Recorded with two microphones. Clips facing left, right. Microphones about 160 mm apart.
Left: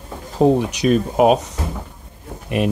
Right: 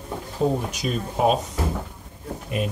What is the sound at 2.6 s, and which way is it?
Speech, 85° left.